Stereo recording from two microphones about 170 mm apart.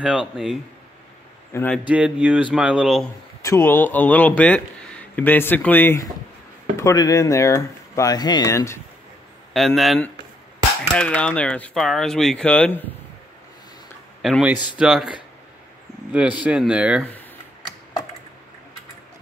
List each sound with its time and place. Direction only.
0.0 s speech: 5° right (ahead or behind)
1.5 s a man's voice: 10° left (ahead or behind)
1.9 s speech: 5° right (ahead or behind)
3.4 s speech: 15° left (ahead or behind)
9.5 s speech: centre (ahead or behind)
14.4 s speech: 10° right (ahead or behind)